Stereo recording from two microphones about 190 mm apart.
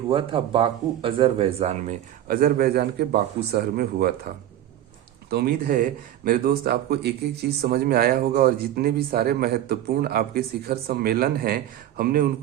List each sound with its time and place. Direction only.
0.1 s speech: 25° right (ahead or behind); by 4.1 s 55° right (ahead or behind)
5.3 s speech: 55° right (ahead or behind)